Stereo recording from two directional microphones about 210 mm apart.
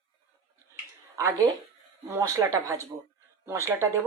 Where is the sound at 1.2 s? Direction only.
15° right (ahead or behind).